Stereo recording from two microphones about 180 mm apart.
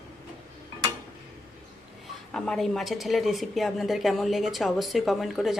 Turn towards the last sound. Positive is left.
turn(degrees=0)  # may be behind; listen again after turning